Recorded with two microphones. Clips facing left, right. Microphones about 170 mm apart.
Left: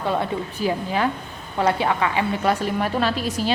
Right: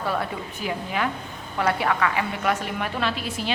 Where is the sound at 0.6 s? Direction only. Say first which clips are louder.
Left 4 dB; 35° left (ahead or behind).